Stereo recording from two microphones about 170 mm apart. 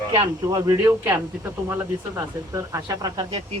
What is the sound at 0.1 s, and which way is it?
Speech, 25° right (ahead or behind).